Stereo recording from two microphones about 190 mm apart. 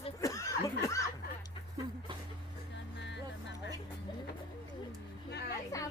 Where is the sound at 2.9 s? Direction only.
65° left (ahead or behind).